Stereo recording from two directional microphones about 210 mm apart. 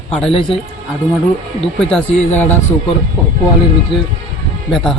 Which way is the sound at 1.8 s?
5° left (ahead or behind).